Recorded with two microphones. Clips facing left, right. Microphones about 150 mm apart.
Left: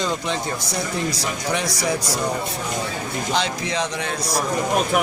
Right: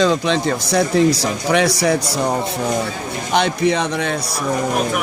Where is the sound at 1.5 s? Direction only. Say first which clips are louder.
Right 10 dB; 70° right (ahead or behind).